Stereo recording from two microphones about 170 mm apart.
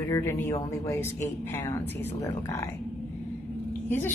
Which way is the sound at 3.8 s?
10° left (ahead or behind).